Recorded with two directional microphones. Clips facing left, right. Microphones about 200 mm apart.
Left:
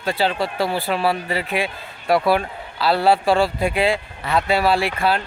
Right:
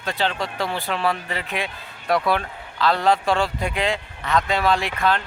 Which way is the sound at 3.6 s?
10° left (ahead or behind).